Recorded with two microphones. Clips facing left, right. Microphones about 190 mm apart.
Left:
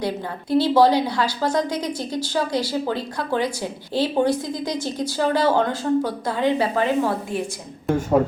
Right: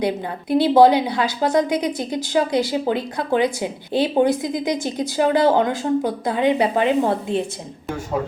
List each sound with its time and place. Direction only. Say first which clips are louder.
0.0 s a woman's voice: right 3 dB; 20° right (ahead or behind)